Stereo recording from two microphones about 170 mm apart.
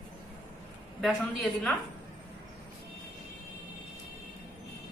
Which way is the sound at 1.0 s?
5° left (ahead or behind).